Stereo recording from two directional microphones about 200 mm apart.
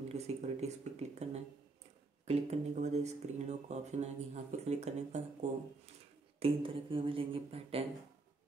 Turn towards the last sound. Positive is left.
turn(degrees=-30)  # may be behind; listen again after turning